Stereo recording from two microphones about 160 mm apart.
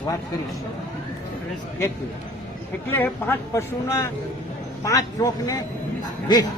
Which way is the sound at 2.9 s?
15° left (ahead or behind).